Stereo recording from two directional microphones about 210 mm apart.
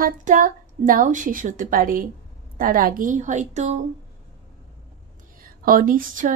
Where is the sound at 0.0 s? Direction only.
40° right (ahead or behind).